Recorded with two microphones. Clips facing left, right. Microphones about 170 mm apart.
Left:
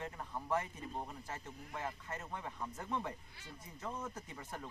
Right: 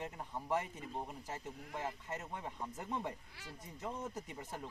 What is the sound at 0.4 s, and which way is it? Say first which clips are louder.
Speech: even; 15° right (ahead or behind).